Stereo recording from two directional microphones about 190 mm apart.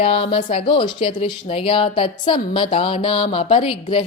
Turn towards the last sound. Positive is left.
turn(degrees=30)  # may be behind; listen again after turning